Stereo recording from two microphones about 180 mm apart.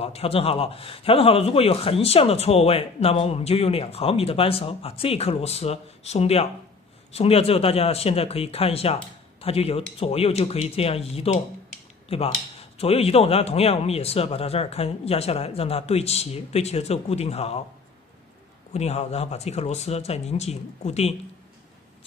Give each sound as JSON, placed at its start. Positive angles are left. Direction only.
{"t": 0.0, "sound": "a man's voice", "side_deg": 35}
{"t": 18.7, "sound": "a man's voice", "side_deg": 35}